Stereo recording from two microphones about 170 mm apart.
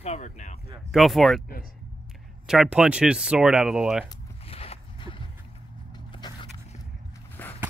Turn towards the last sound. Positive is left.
turn(degrees=10)  # may be behind; listen again after turning